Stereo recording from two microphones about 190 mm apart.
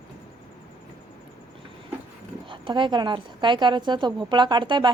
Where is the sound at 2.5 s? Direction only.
25° right (ahead or behind).